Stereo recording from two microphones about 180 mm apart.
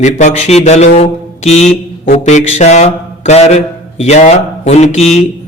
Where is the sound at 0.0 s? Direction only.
40° left (ahead or behind).